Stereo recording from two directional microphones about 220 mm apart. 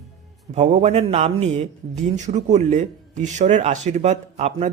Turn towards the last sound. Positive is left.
turn(degrees=-30)  # may be behind; listen again after turning